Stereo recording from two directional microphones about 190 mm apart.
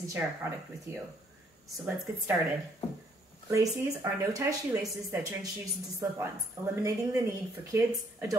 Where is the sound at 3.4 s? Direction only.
15° right (ahead or behind).